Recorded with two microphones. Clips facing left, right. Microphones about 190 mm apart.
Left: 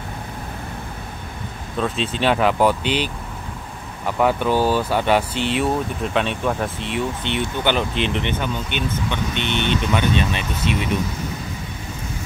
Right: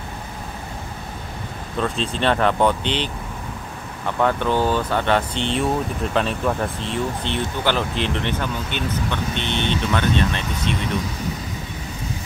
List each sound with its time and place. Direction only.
1.8 s speech: centre (ahead or behind)
6.8 s speech: 30° right (ahead or behind)
7.6 s speech: centre (ahead or behind)
9.4 s speech: 30° right (ahead or behind)
9.9 s speech: 5° left (ahead or behind)